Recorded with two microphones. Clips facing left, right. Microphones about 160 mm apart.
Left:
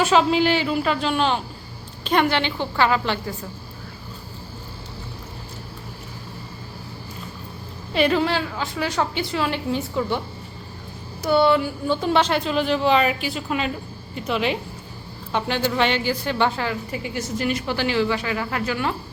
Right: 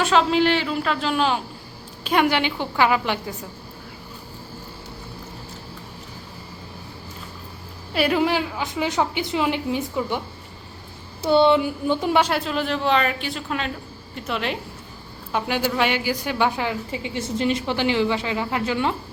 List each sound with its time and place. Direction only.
0.0 s a woman's voice: centre (ahead or behind); by 3.3 s 15° right (ahead or behind)
7.9 s a woman's voice: 10° right (ahead or behind)
11.2 s a woman's voice: 25° right (ahead or behind)